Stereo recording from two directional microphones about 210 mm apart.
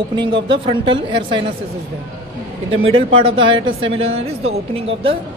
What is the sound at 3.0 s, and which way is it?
Speech, 70° right (ahead or behind).